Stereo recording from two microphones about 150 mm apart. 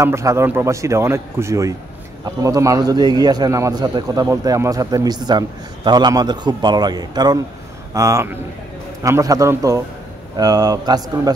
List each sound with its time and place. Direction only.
0.0 s a man's voice: 20° right (ahead or behind)